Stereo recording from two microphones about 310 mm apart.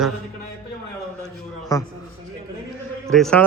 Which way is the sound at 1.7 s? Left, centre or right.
Centre.